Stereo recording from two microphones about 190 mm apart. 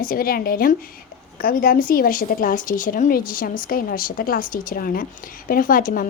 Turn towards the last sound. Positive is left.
turn(degrees=45)  # may be behind; listen again after turning